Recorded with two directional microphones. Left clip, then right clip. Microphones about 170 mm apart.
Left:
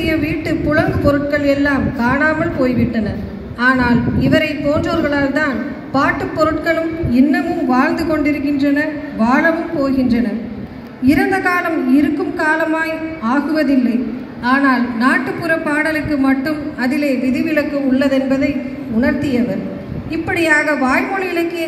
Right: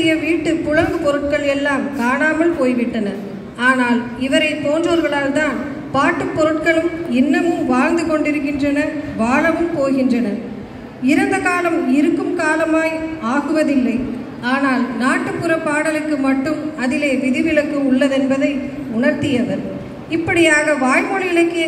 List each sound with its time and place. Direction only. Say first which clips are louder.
0.0 s a man's voice: right 2 dB; 30° right (ahead or behind)